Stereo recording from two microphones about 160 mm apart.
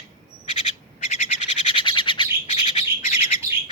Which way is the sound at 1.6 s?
30° left (ahead or behind).